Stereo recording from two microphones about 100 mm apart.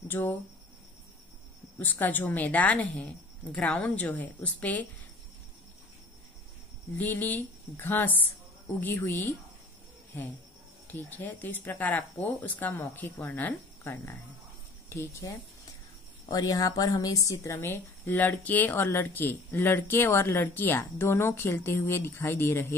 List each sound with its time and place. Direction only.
0.1 s speech: 20° left (ahead or behind)
1.8 s speech: 20° left (ahead or behind)
7.0 s speech: 20° left (ahead or behind)
10.9 s speech: 15° left (ahead or behind)